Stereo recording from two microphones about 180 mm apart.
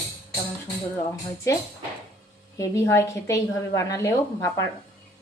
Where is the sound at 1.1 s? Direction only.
15° left (ahead or behind).